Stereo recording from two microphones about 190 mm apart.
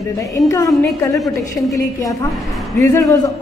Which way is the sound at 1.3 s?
15° left (ahead or behind).